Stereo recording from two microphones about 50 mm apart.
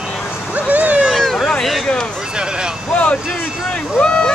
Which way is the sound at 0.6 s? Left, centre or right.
Right.